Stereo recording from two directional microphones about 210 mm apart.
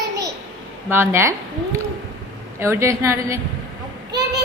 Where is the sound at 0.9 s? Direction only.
10° right (ahead or behind).